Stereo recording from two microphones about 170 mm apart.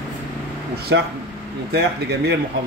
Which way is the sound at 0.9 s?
90° right.